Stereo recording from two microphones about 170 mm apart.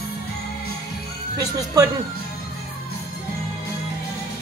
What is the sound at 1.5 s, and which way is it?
Speech, 20° right (ahead or behind).